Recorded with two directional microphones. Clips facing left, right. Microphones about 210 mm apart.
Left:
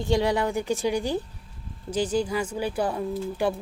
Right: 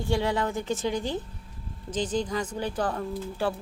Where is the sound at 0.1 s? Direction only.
15° left (ahead or behind).